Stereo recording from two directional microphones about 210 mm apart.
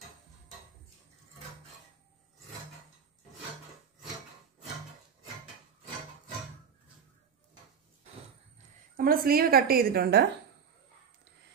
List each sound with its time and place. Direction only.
8.9 s a woman's voice: 45° right (ahead or behind)